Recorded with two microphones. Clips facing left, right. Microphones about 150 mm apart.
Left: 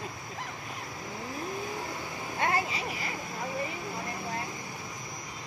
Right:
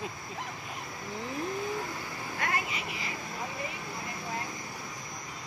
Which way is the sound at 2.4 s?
30° left (ahead or behind).